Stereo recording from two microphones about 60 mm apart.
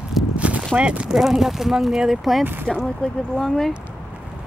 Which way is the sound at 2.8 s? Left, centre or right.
Centre.